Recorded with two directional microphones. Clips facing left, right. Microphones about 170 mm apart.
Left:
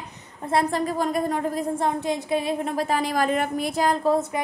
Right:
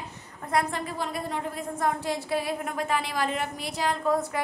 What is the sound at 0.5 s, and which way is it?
A woman's voice, 40° left (ahead or behind).